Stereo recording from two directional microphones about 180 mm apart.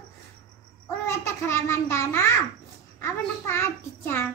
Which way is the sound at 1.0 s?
15° left (ahead or behind).